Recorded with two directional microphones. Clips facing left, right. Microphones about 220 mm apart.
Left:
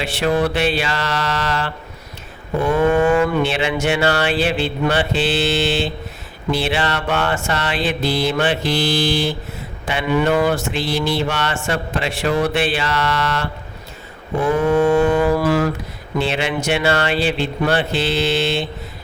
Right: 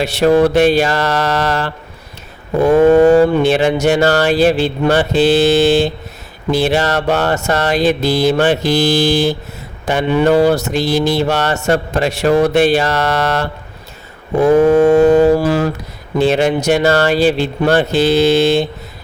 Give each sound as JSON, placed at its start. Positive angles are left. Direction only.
{"t": 0.0, "sound": "mantra", "side_deg": -40}
{"t": 9.8, "sound": "speech", "side_deg": -40}
{"t": 10.2, "sound": "mantra", "side_deg": -35}
{"t": 16.1, "sound": "mantra", "side_deg": -45}